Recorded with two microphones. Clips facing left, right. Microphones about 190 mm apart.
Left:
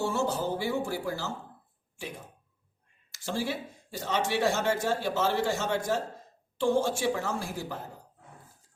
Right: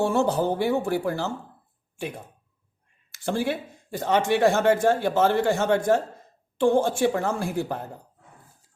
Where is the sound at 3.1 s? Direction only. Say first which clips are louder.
Right 6 dB; 55° right (ahead or behind).